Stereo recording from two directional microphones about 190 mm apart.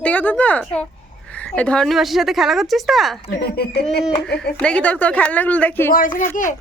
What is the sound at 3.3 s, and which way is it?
Speech, 55° left (ahead or behind).